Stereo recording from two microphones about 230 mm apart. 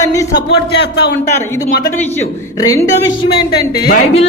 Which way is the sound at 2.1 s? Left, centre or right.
Centre.